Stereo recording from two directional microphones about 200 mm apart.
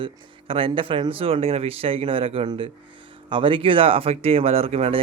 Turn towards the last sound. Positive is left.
turn(degrees=-30)  # may be behind; listen again after turning